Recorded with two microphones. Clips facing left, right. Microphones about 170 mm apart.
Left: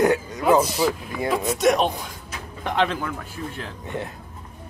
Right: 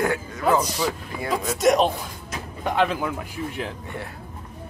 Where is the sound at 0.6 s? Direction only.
5° left (ahead or behind).